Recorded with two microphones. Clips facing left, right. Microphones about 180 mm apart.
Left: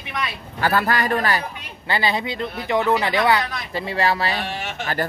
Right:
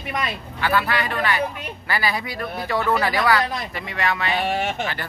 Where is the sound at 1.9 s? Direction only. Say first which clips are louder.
Left 3 dB; 25° left (ahead or behind).